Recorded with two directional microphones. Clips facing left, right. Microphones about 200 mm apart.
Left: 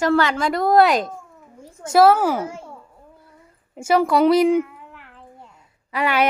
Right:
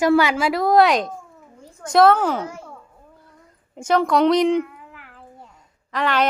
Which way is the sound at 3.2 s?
5° left (ahead or behind).